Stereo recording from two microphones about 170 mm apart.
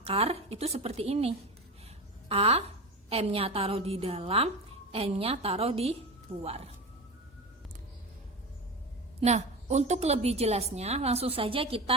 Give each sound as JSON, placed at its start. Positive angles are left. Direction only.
{"t": 0.0, "sound": "a woman's voice", "side_deg": -35}
{"t": 9.2, "sound": "a woman's voice", "side_deg": -40}